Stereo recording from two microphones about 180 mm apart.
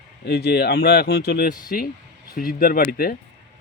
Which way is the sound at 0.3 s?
65° left (ahead or behind).